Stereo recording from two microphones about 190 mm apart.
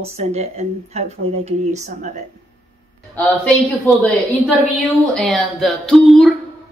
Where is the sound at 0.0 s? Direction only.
35° right (ahead or behind).